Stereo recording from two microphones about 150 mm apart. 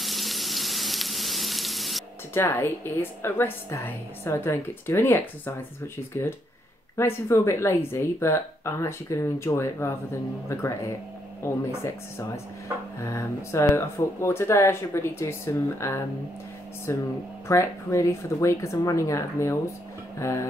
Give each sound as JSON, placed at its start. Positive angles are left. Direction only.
{"t": 0.0, "sound": "frying", "side_deg": 0}
{"t": 2.3, "sound": "a woman's voice", "side_deg": 15}
{"t": 7.0, "sound": "a woman's voice", "side_deg": 15}